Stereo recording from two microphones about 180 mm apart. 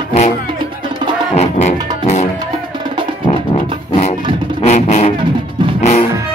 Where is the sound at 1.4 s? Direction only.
40° left (ahead or behind).